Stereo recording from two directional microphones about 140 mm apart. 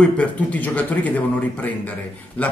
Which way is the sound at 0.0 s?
10° left (ahead or behind).